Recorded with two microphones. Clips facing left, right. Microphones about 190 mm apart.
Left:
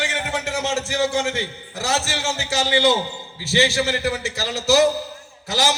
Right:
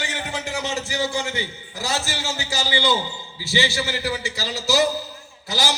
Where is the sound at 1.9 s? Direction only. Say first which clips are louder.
Left 3 dB; 65° left (ahead or behind).